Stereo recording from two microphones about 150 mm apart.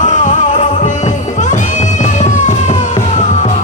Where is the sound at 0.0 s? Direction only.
55° left (ahead or behind).